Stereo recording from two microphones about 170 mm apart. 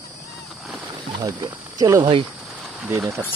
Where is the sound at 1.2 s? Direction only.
20° right (ahead or behind).